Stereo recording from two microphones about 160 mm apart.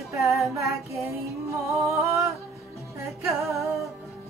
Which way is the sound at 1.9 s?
20° right (ahead or behind).